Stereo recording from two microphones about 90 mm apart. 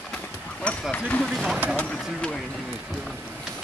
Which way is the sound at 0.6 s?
10° left (ahead or behind).